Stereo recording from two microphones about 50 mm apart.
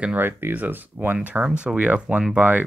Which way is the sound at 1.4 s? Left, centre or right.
Right.